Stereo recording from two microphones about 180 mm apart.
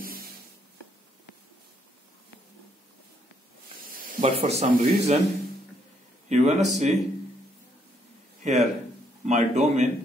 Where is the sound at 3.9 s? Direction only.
50° right (ahead or behind).